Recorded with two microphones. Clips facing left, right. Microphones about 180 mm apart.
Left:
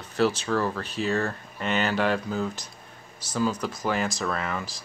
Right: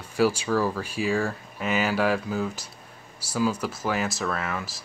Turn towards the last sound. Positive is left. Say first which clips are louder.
# even
turn(degrees=-5)  # may be behind; listen again after turning